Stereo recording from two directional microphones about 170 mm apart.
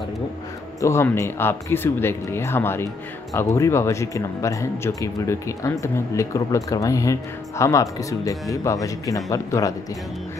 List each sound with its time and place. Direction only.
0.7 s speech: 15° left (ahead or behind)